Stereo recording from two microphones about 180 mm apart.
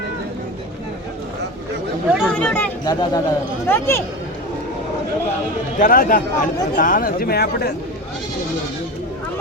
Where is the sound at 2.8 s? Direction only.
25° left (ahead or behind).